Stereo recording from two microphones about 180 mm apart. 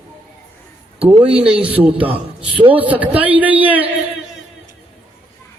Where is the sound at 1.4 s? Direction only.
5° right (ahead or behind).